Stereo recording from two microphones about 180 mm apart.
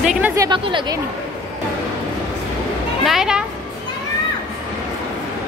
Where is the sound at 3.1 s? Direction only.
5° right (ahead or behind).